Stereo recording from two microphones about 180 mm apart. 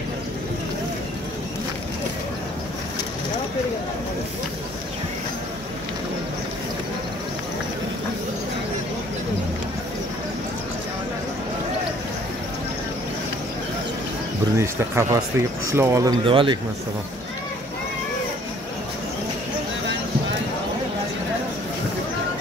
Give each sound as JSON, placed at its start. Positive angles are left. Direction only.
{"t": 14.6, "sound": "speech", "side_deg": -15}